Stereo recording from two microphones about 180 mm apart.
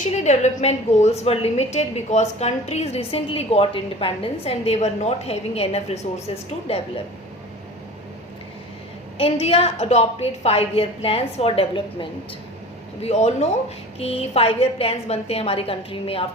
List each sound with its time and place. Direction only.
0.3 s a woman's voice: 40° left (ahead or behind)
9.1 s a woman's voice: 35° left (ahead or behind)